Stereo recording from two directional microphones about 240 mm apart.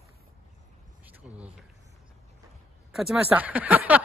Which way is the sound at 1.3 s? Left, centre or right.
Centre.